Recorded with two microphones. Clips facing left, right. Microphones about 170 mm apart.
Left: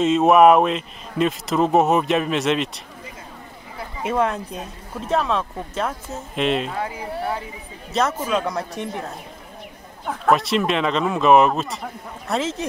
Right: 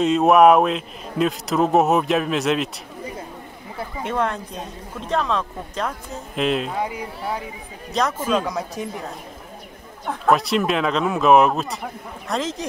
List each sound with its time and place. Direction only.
0.0 s a man's voice: centre (ahead or behind)
4.0 s a man's voice: 5° left (ahead or behind)
8.0 s a man's voice: 5° left (ahead or behind)
10.0 s a man's voice: centre (ahead or behind)